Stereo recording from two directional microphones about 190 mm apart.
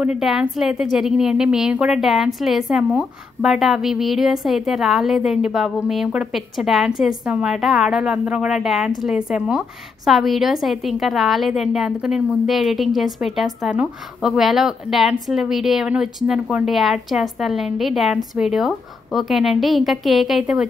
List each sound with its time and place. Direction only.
0.0 s a woman's voice: 5° right (ahead or behind)